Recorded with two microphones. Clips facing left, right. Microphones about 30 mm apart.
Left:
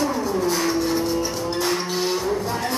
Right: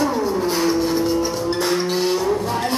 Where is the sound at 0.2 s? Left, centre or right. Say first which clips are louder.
Right 2 dB; right.